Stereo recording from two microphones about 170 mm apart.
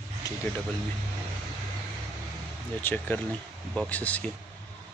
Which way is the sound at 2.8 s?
10° left (ahead or behind).